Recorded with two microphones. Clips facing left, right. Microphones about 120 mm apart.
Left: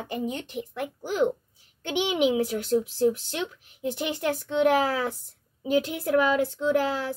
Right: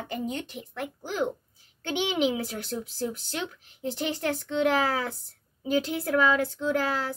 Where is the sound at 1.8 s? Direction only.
15° left (ahead or behind).